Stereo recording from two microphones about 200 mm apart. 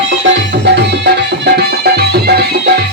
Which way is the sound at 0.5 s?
60° right (ahead or behind).